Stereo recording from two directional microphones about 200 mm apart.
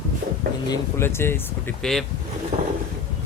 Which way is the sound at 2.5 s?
40° right (ahead or behind).